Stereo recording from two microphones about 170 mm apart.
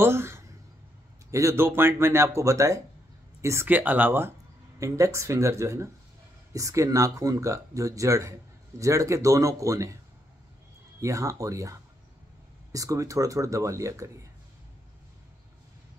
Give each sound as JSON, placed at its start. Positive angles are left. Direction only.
{"t": 0.0, "sound": "speech", "side_deg": -15}
{"t": 11.0, "sound": "speech", "side_deg": -20}